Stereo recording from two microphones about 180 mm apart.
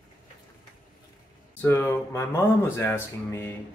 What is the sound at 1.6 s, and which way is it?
Speech, 10° left (ahead or behind).